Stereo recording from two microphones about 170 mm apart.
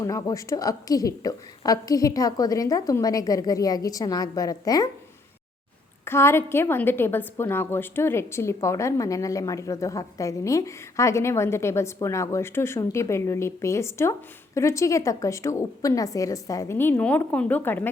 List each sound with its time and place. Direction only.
0.0 s a woman's voice: 20° left (ahead or behind)
6.1 s a woman's voice: 15° left (ahead or behind)